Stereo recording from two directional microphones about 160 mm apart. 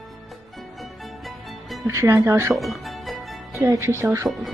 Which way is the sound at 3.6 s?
15° right (ahead or behind).